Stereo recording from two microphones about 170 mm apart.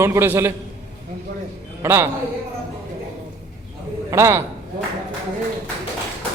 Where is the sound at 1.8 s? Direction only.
15° right (ahead or behind).